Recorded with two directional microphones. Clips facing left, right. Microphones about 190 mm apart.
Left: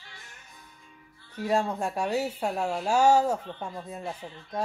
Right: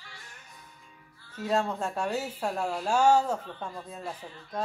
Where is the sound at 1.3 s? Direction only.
10° left (ahead or behind).